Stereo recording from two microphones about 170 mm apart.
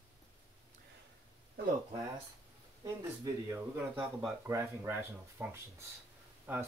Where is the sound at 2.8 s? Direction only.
15° right (ahead or behind).